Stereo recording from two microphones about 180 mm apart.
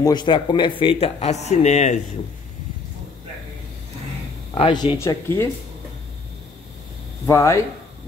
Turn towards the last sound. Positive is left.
turn(degrees=15)  # may be behind; listen again after turning